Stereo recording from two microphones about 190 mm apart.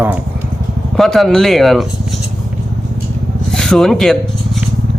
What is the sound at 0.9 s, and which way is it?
Speech, centre (ahead or behind).